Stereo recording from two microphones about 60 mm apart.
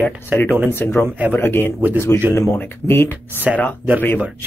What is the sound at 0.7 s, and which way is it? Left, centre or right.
Speech, left.